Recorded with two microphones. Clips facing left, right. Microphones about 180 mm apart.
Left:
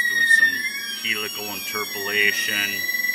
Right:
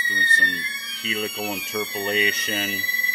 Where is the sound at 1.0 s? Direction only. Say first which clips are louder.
Right 5 dB; 30° right (ahead or behind).